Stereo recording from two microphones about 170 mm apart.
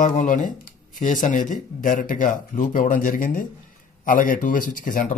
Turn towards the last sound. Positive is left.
turn(degrees=50)  # may be behind; listen again after turning